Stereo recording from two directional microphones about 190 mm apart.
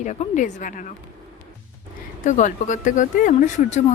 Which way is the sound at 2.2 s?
40° left (ahead or behind).